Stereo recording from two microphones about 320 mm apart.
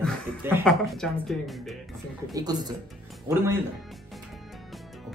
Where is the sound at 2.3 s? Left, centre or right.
Centre.